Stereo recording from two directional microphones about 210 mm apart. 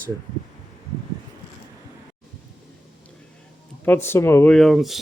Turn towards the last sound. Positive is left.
turn(degrees=0)  # may be behind; listen again after turning